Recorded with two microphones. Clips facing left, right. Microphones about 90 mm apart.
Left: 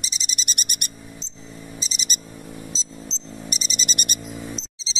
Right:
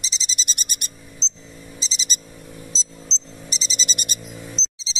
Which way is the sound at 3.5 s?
55° left (ahead or behind).